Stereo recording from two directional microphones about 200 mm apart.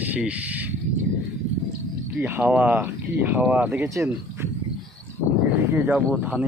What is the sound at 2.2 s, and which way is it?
Speech, 10° right (ahead or behind).